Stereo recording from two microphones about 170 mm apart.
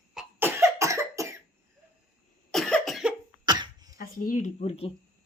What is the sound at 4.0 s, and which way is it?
Speech, 50° left (ahead or behind).